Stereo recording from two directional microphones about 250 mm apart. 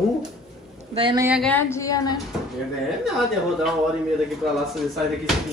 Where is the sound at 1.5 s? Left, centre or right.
Centre.